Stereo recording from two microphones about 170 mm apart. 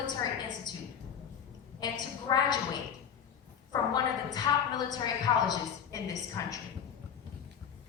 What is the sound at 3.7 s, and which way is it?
A woman's voice, 25° left (ahead or behind).